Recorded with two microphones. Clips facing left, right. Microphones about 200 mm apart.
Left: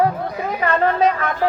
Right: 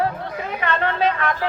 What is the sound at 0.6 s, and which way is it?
Speech, 40° left (ahead or behind).